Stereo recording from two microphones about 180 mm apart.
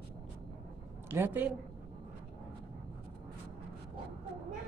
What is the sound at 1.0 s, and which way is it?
Speech, 10° right (ahead or behind).